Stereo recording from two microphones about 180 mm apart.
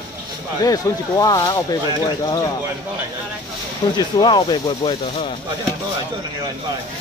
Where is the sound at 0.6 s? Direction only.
20° left (ahead or behind).